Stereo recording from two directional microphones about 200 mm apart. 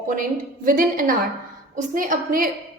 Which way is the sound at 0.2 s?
45° right (ahead or behind).